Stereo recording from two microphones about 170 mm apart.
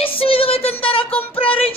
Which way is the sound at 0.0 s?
35° left (ahead or behind).